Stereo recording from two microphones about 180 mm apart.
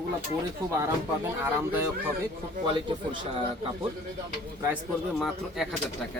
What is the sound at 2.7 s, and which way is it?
Speech, 30° right (ahead or behind).